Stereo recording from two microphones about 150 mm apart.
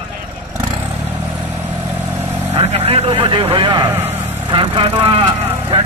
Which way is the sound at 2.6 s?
40° right (ahead or behind).